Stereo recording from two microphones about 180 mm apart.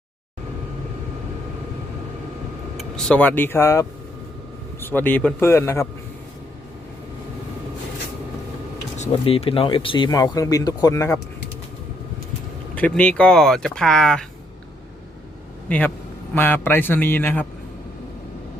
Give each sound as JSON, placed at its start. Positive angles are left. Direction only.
{"t": 2.7, "sound": "a man's voice", "side_deg": 5}
{"t": 9.0, "sound": "speech", "side_deg": 30}
{"t": 12.7, "sound": "speech", "side_deg": 5}
{"t": 16.3, "sound": "a man's voice", "side_deg": 10}